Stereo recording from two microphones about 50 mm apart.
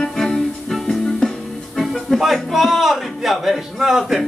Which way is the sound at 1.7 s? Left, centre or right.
Centre.